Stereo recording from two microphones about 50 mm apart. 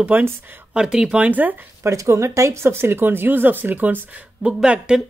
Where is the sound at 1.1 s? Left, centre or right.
Right.